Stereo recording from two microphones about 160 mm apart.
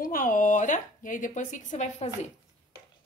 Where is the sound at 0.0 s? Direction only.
60° left (ahead or behind).